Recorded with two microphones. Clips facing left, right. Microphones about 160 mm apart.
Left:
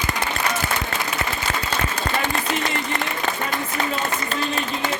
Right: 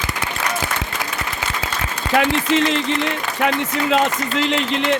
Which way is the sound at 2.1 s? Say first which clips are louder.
Right 11 dB; 90° right.